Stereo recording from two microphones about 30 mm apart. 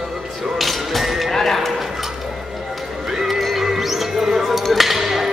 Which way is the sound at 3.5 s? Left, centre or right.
Centre.